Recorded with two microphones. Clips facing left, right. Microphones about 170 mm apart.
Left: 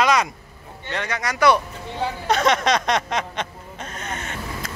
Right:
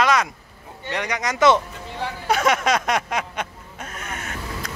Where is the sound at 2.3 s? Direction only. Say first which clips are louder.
Even; 5° right (ahead or behind).